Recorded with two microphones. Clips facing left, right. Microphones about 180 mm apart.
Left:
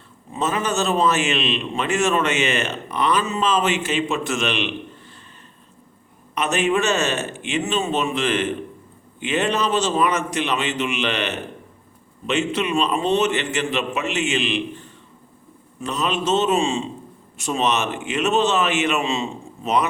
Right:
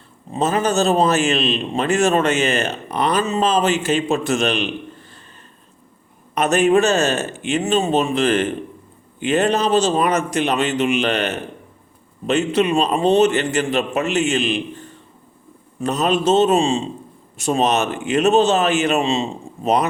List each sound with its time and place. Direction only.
0.3 s a man's voice: 35° right (ahead or behind)
6.3 s a man's voice: 40° right (ahead or behind)